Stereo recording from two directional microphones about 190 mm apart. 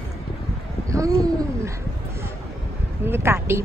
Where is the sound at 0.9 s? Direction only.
15° right (ahead or behind).